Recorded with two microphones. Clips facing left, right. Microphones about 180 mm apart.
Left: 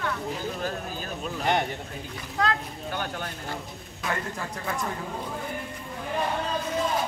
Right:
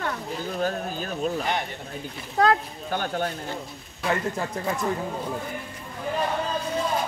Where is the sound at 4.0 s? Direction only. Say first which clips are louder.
Right 5 dB; 30° right (ahead or behind).